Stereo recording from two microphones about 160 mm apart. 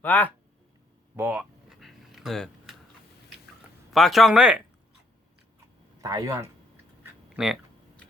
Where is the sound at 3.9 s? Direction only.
Centre (ahead or behind).